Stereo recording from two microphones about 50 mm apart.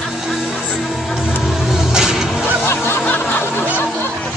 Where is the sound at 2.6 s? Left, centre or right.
Left.